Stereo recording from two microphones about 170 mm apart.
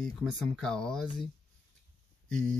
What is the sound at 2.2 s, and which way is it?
Speech, 5° left (ahead or behind).